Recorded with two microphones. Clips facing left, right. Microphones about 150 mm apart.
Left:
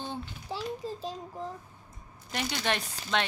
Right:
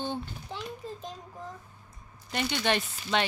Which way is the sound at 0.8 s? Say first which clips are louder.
Left 3 dB; 35° left (ahead or behind).